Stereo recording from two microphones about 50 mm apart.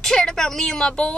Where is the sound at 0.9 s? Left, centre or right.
Left.